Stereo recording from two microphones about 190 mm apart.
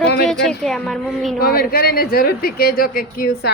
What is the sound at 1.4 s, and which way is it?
Speech, 50° left (ahead or behind).